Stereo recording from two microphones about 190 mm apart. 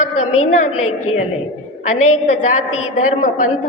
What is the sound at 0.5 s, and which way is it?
Speech, 40° left (ahead or behind).